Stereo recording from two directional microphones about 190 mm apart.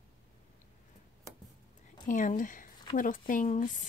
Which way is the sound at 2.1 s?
40° left (ahead or behind).